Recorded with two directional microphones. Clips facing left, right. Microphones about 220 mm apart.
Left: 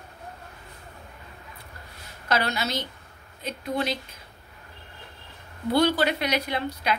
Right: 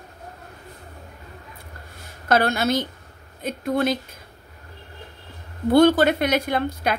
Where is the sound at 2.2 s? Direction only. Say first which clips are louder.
Right 7 dB; 50° right (ahead or behind).